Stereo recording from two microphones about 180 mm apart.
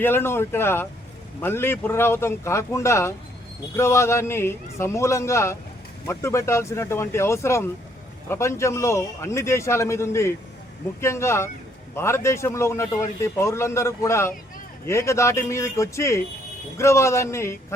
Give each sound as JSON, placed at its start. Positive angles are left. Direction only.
{"t": 0.0, "sound": "a man's voice", "side_deg": 10}